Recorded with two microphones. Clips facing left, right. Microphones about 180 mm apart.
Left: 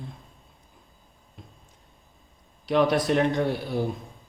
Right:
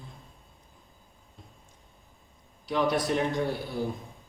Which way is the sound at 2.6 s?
75° left (ahead or behind).